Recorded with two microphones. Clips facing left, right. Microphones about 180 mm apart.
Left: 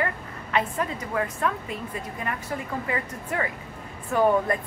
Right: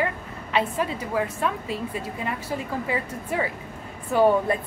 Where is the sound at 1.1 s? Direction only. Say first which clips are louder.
Right 1 dB; 15° right (ahead or behind).